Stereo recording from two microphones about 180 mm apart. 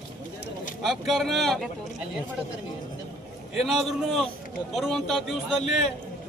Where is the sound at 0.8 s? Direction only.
Centre (ahead or behind).